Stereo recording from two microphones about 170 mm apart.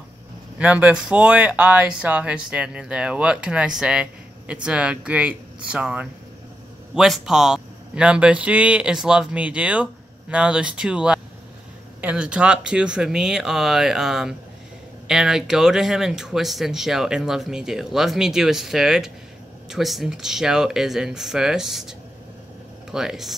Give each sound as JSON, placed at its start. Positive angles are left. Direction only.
{"t": 0.6, "sound": "speech", "side_deg": -10}